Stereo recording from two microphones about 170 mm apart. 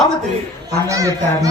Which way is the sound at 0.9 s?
20° right (ahead or behind).